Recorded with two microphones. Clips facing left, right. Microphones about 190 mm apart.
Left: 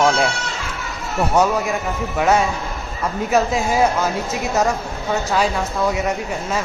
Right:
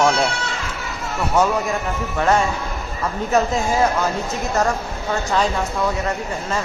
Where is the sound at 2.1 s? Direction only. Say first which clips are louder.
Left 1 dB; 10° left (ahead or behind).